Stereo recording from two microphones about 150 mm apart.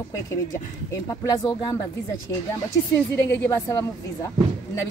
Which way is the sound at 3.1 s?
20° left (ahead or behind).